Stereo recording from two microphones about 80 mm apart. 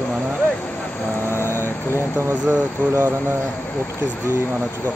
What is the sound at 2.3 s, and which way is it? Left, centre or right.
Speech, right.